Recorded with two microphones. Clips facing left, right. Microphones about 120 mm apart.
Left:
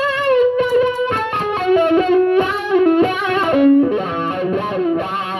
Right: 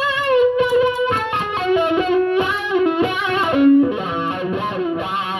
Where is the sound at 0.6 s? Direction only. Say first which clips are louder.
Left 1 dB; 45° left (ahead or behind).